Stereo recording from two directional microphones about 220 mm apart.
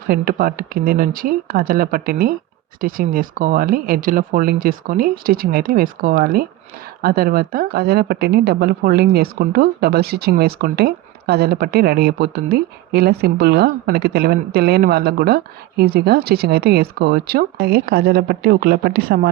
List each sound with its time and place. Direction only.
0.1 s speech: 45° right (ahead or behind)